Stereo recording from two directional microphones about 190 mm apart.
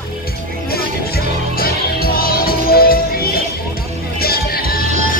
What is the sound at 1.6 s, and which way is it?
Music, 50° left (ahead or behind).